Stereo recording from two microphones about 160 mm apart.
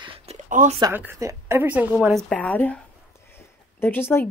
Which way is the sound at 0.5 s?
55° right (ahead or behind).